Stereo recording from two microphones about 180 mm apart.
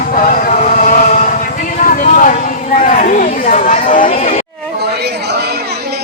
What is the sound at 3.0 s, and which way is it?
Chatter, 45° left (ahead or behind).